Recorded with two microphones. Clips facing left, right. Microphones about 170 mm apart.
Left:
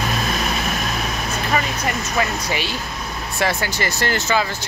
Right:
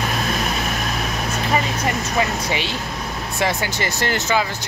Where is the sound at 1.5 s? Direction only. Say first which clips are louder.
Right 1 dB; 25° right (ahead or behind).